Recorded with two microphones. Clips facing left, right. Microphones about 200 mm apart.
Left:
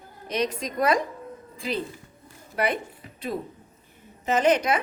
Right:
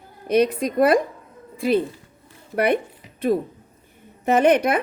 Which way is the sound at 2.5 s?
55° right (ahead or behind).